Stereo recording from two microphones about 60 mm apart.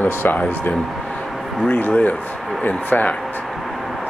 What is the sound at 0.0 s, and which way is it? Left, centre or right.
Speech, left.